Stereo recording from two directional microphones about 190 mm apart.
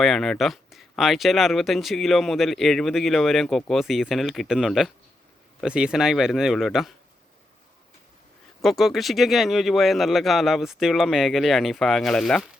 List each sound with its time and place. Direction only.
0.0 s speech: centre (ahead or behind)
8.6 s speech: centre (ahead or behind)